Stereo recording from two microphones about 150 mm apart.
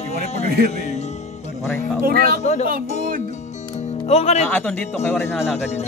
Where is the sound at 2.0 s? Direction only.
75° right (ahead or behind).